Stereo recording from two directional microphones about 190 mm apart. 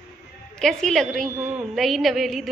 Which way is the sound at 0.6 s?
Centre (ahead or behind).